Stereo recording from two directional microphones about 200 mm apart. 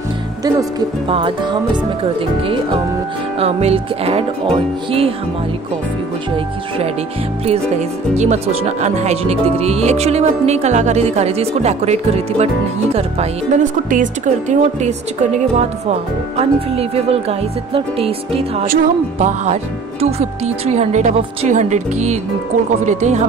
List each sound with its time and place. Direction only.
0.4 s speech: 20° right (ahead or behind)
8.2 s speech: 35° right (ahead or behind)